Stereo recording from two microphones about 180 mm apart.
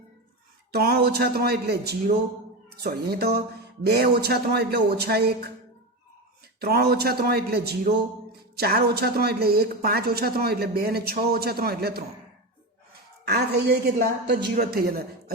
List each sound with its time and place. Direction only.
0.7 s a woman's voice: 60° right (ahead or behind)
6.6 s a woman's voice: 60° right (ahead or behind)
13.2 s a woman's voice: 65° right (ahead or behind)